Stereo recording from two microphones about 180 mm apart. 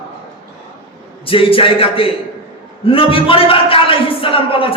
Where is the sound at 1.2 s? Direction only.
30° left (ahead or behind).